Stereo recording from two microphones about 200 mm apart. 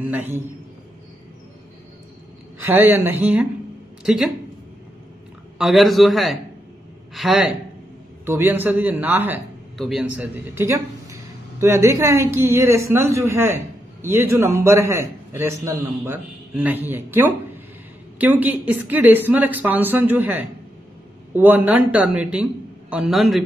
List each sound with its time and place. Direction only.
0.0 s a man's voice: 10° right (ahead or behind)
2.6 s a man's voice: 10° right (ahead or behind)
5.6 s a man's voice: centre (ahead or behind)
18.2 s a man's voice: 10° right (ahead or behind)